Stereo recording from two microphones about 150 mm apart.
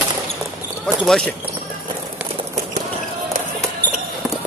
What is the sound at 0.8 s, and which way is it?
Speech, 5° left (ahead or behind).